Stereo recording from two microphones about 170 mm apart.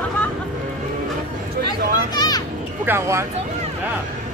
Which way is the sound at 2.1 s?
25° left (ahead or behind).